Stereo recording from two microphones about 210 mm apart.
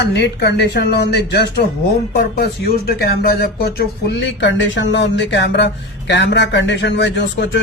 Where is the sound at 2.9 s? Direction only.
45° left (ahead or behind).